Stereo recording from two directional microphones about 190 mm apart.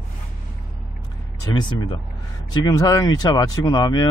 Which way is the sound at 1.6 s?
25° left (ahead or behind).